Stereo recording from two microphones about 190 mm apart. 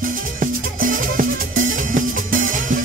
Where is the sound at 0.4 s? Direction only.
45° right (ahead or behind).